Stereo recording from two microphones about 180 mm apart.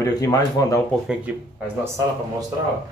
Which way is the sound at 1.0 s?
5° right (ahead or behind).